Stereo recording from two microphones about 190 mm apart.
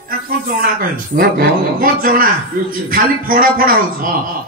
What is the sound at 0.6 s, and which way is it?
Speech, 50° right (ahead or behind).